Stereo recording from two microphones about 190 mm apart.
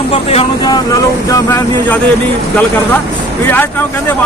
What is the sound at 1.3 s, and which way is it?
Speech, 15° left (ahead or behind).